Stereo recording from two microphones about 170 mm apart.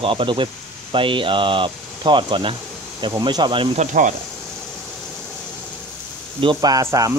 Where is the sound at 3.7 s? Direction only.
50° right (ahead or behind).